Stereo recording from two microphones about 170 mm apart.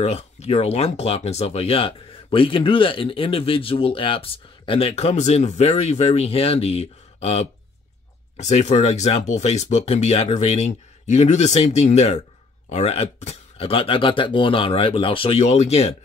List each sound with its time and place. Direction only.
0.0 s speech: 40° left (ahead or behind)